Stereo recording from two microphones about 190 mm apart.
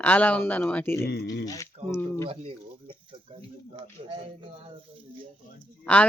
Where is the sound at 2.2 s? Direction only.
25° right (ahead or behind).